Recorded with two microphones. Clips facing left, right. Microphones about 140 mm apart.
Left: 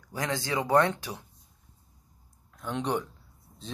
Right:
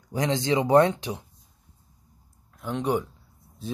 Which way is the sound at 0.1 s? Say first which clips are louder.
Right 6 dB; 20° right (ahead or behind).